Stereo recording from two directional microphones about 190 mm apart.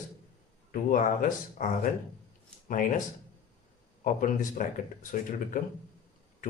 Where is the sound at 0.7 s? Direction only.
45° left (ahead or behind).